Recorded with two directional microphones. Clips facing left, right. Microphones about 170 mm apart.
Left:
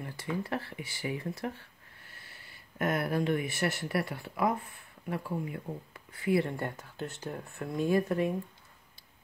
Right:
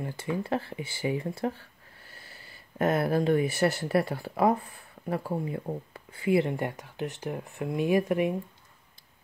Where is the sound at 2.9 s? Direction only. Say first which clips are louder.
Right 5 dB; 30° right (ahead or behind); by 8.4 s 15° right (ahead or behind).